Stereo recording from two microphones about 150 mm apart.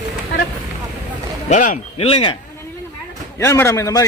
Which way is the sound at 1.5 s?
60° left (ahead or behind).